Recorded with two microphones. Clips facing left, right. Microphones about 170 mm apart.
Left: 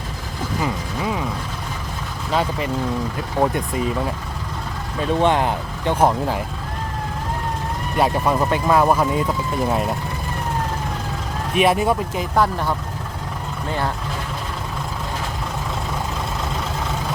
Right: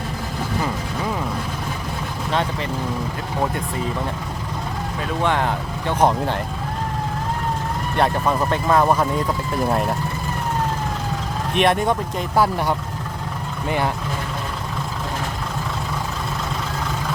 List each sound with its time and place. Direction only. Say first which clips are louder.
2.3 s speech: left 2 dB; 5° left (ahead or behind)
5.2 s speech: left 1 dB; 15° left (ahead or behind)
6.1 s speech: even; centre (ahead or behind)
7.9 s speech: left 1 dB; 10° left (ahead or behind)
11.5 s speech: left 1 dB; 5° left (ahead or behind)
12.4 s speech: right 1 dB; 15° right (ahead or behind)